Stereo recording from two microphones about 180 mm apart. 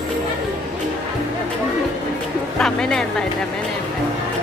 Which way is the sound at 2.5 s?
5° left (ahead or behind).